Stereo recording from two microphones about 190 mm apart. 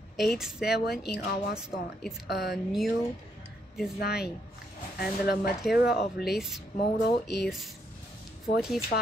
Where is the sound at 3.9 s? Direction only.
55° left (ahead or behind).